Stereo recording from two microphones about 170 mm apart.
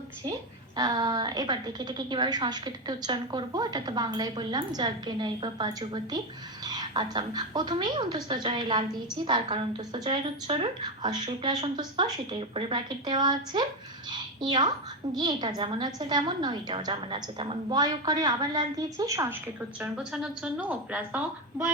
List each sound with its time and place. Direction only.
0.8 s a woman's voice: 25° right (ahead or behind)
19.8 s a woman's voice: 5° right (ahead or behind)